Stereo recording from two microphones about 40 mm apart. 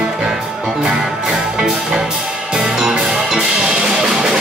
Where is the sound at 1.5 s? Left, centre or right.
Centre.